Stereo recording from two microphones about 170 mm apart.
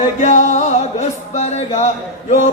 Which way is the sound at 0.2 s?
45° left (ahead or behind).